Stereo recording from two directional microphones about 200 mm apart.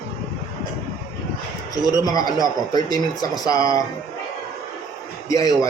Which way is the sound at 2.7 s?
20° left (ahead or behind).